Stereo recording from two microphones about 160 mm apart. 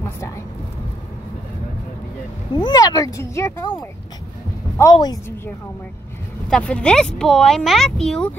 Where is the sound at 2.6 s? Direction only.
25° left (ahead or behind).